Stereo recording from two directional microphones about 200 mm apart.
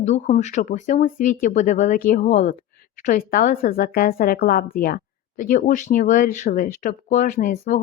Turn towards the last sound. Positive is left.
turn(degrees=45)  # may be behind; listen again after turning